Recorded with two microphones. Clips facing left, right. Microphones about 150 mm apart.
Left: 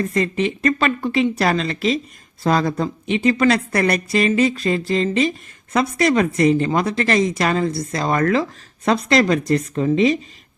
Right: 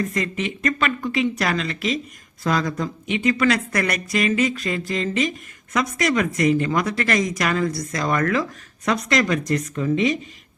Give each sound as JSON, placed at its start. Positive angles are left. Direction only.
{"t": 0.0, "sound": "a woman's voice", "side_deg": 30}